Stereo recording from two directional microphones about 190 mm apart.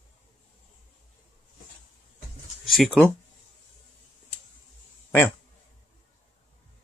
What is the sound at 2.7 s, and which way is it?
Speech, centre (ahead or behind).